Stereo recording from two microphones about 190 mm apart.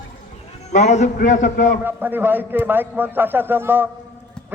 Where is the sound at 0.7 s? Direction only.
35° left (ahead or behind).